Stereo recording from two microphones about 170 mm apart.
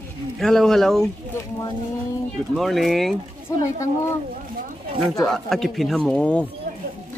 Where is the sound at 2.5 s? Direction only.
Centre (ahead or behind).